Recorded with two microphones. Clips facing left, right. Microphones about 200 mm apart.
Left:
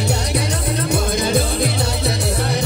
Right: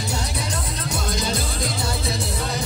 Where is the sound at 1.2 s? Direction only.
60° left (ahead or behind).